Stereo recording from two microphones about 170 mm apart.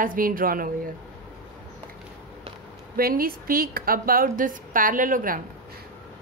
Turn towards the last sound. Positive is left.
turn(degrees=-55)  # may be behind; listen again after turning